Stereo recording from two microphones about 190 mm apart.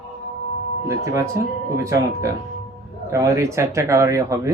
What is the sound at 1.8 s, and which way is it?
Speech, 15° right (ahead or behind).